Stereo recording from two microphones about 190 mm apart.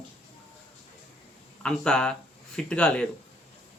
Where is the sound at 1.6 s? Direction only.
5° left (ahead or behind).